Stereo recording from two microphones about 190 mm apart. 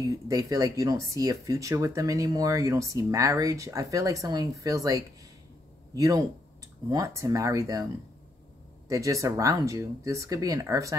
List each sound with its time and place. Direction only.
0.0 s speech: 20° right (ahead or behind)